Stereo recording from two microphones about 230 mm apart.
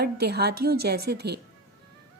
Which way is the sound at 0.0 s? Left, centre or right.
Right.